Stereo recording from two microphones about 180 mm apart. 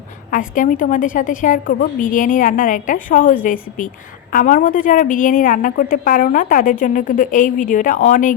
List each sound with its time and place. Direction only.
0.3 s a woman's voice: 45° left (ahead or behind)